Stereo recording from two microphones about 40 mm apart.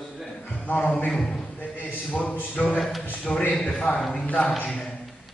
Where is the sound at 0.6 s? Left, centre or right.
Left.